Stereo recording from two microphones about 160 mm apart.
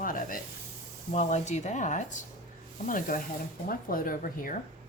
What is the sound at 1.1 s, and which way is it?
A woman's voice, 45° left (ahead or behind).